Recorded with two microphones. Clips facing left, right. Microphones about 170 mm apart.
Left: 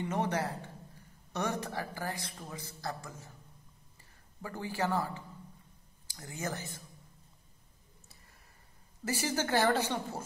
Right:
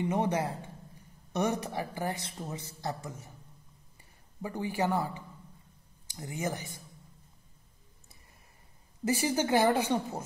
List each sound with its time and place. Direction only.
0.0 s speech: 15° right (ahead or behind)
4.4 s a woman's voice: 15° right (ahead or behind)
9.0 s a woman's voice: 15° right (ahead or behind)